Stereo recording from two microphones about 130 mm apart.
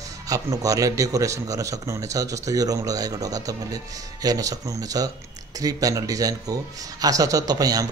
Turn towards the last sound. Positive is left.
turn(degrees=-30)  # may be behind; listen again after turning